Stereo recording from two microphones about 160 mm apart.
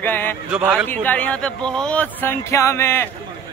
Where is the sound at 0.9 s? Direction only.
10° left (ahead or behind).